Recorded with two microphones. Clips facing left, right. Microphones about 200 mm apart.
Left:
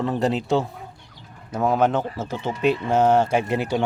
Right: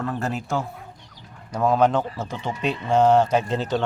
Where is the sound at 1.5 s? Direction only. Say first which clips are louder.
Right 1 dB; 5° left (ahead or behind).